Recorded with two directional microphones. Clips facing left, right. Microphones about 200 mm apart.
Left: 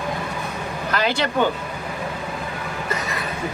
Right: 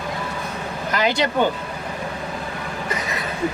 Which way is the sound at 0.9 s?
15° right (ahead or behind).